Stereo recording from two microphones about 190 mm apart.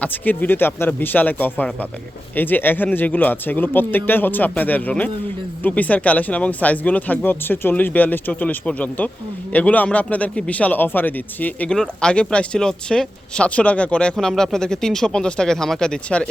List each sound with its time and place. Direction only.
0.0 s a man's voice: 10° left (ahead or behind)